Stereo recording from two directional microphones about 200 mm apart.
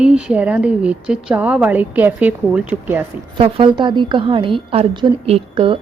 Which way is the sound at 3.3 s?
25° right (ahead or behind).